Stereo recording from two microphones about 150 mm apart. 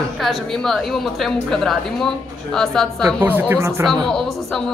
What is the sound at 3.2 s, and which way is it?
Speech, 15° right (ahead or behind).